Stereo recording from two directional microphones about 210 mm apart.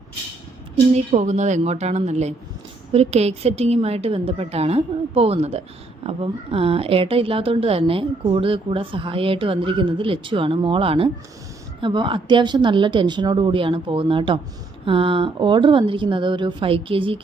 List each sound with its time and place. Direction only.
0.9 s a woman's voice: 30° right (ahead or behind)